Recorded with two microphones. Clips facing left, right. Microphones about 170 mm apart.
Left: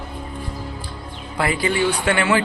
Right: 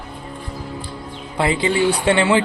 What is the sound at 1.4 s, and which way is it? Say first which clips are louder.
A man's voice: right 2 dB; 25° right (ahead or behind).